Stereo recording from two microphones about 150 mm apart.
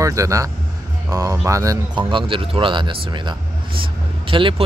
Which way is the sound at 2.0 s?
35° right (ahead or behind).